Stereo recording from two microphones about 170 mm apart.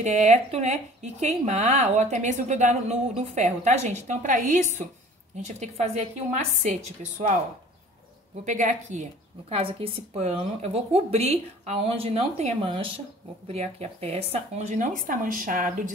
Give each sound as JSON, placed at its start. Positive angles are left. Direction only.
{"t": 0.0, "sound": "speech", "side_deg": -45}
{"t": 8.5, "sound": "speech", "side_deg": -45}
{"t": 9.5, "sound": "a woman's voice", "side_deg": -35}